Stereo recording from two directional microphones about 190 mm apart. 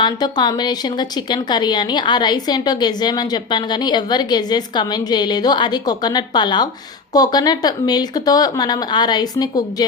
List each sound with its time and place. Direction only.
0.0 s a woman's voice: 20° left (ahead or behind)